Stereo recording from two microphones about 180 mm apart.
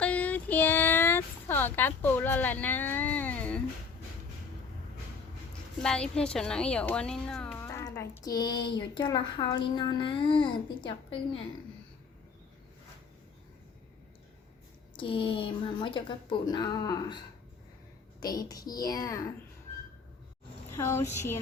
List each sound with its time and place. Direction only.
0.0 s a sound: 5° left (ahead or behind)
5.8 s a woman's voice: 5° left (ahead or behind); by 11.2 s 25° left (ahead or behind)
14.9 s a child's voice: 30° left (ahead or behind)
18.2 s a child's voice: 20° left (ahead or behind)
20.7 s speech: 15° left (ahead or behind)